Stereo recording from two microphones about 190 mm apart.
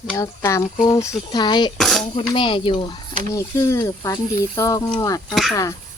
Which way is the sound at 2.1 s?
25° left (ahead or behind).